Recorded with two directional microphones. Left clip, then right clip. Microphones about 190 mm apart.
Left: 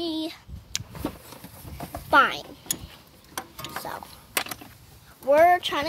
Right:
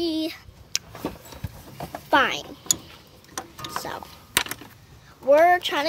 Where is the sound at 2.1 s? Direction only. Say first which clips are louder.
Left 1 dB; 10° right (ahead or behind).